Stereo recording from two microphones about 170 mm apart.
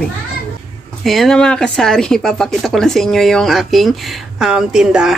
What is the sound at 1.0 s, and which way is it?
Speech, centre (ahead or behind).